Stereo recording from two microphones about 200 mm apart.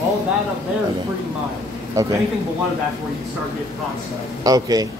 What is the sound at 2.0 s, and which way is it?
Speech, 15° right (ahead or behind).